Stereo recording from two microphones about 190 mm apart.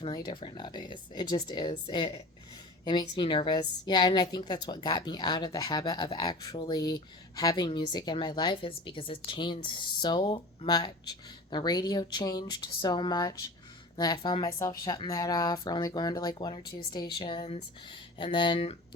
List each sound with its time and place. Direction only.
0.3 s a woman's voice: 25° left (ahead or behind)